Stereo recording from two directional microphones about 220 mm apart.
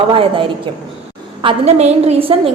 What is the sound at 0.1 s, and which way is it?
A woman's voice, 25° right (ahead or behind).